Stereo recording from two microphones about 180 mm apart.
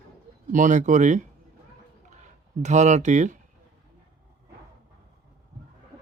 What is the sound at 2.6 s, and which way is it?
Speech, 40° right (ahead or behind).